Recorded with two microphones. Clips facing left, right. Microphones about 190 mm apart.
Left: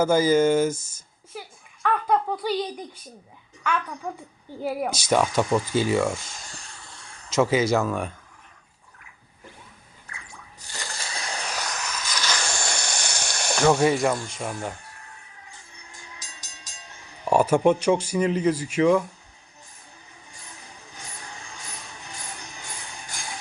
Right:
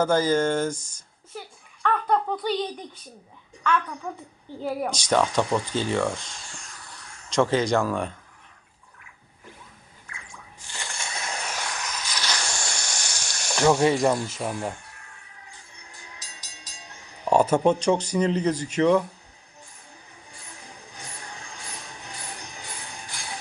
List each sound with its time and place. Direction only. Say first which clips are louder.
0.0 s a child's voice: left 3 dB; 10° left (ahead or behind)
1.8 s a sound: left 1 dB; 10° left (ahead or behind)
4.0 s speech: left 1 dB; 10° left (ahead or behind)
7.3 s speech: left 1 dB; 5° left (ahead or behind)
10.6 s a sound: even; 40° left (ahead or behind)
12.7 s sizzle: left 4 dB; 60° left (ahead or behind)
13.7 s speech: even; centre (ahead or behind)
17.2 s speech: left 1 dB; 10° left (ahead or behind)
23.1 s jingle bell: left 3 dB; 45° left (ahead or behind)